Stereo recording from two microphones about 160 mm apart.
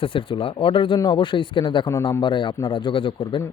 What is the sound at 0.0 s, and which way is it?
Speech, 35° left (ahead or behind).